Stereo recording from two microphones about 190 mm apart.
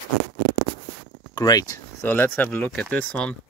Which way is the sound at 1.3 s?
20° left (ahead or behind).